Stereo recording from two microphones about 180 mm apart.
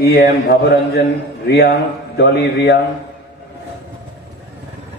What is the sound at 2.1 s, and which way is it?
Mantra, 75° left (ahead or behind).